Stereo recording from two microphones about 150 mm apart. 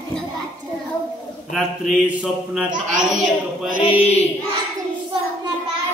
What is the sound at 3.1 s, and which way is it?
Speech, 60° right (ahead or behind).